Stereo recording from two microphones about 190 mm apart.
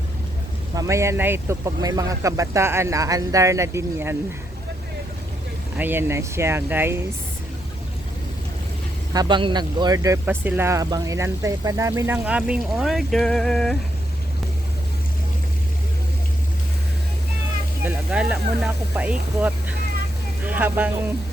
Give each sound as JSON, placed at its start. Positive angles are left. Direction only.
{"t": 0.8, "sound": "speech", "side_deg": -15}
{"t": 5.7, "sound": "speech", "side_deg": -10}
{"t": 9.1, "sound": "speech", "side_deg": -25}
{"t": 17.8, "sound": "speech", "side_deg": -5}
{"t": 20.4, "sound": "a sound", "side_deg": -10}